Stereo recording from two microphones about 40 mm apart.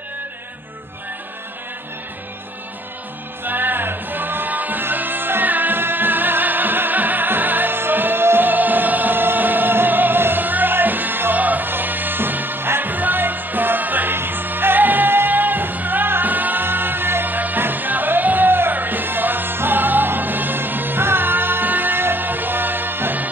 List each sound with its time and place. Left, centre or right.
3.4 s music: right
11.3 s music: right
12.9 s music: right
14.1 s music: right
16.6 s music: right